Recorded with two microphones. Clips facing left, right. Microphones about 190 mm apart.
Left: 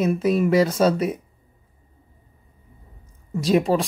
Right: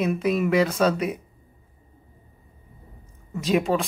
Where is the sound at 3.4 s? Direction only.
35° left (ahead or behind).